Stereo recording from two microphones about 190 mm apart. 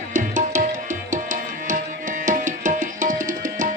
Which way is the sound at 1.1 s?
45° right (ahead or behind).